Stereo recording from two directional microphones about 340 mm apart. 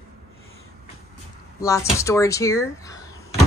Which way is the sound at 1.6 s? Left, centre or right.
Centre.